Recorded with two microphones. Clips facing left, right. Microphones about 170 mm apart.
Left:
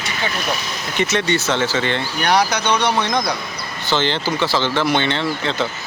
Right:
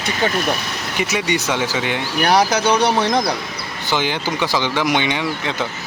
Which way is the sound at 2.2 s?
35° right (ahead or behind).